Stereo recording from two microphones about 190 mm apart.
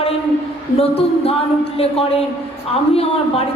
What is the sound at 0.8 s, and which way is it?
A woman's voice, 30° left (ahead or behind).